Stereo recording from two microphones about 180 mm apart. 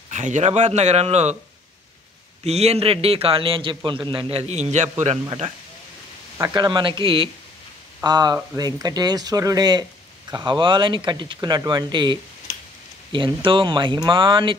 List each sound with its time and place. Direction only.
0.1 s a man's voice: 40° right (ahead or behind)
2.4 s a man's voice: 35° right (ahead or behind)
6.3 s speech: 20° right (ahead or behind)